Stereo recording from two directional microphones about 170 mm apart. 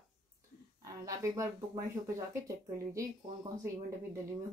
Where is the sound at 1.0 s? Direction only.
20° right (ahead or behind).